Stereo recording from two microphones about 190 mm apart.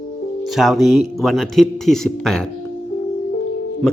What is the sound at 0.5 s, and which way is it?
Speech, centre (ahead or behind).